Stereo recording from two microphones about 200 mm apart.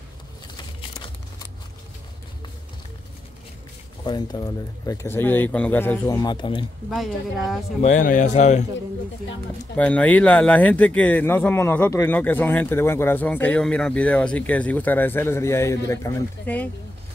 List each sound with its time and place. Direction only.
0.7 s a sound: 25° left (ahead or behind)
4.0 s speech: 20° left (ahead or behind)
6.9 s a woman's voice: centre (ahead or behind)
7.8 s speech: 40° left (ahead or behind)
9.8 s speech: 5° left (ahead or behind)